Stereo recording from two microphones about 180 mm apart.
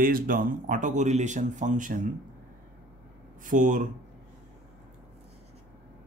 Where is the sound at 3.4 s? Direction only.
45° right (ahead or behind).